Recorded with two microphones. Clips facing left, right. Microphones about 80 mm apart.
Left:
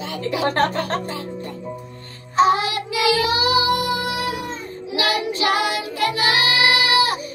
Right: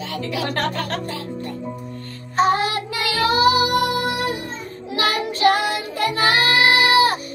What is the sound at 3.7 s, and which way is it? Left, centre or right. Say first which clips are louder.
Music: right 2 dB; right.